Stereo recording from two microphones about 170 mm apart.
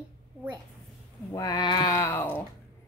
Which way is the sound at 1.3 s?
20° left (ahead or behind).